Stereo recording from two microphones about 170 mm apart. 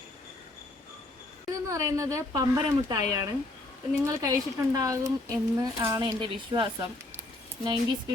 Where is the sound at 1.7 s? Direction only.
20° right (ahead or behind).